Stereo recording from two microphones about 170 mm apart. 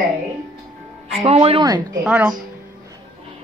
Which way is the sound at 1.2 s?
35° right (ahead or behind).